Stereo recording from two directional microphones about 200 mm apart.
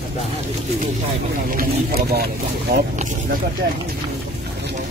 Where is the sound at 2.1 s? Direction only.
50° right (ahead or behind).